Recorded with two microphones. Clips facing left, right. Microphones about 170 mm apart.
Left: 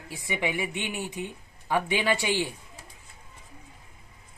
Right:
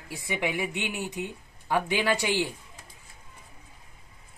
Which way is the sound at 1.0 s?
15° right (ahead or behind).